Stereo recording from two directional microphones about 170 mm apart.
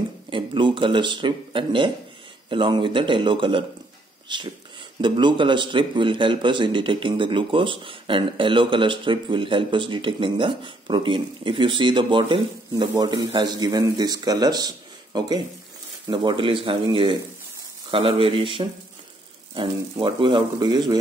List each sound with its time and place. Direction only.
0.3 s speech: 30° right (ahead or behind)